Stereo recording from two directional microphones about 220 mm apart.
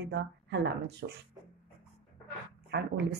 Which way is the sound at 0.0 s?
50° right (ahead or behind).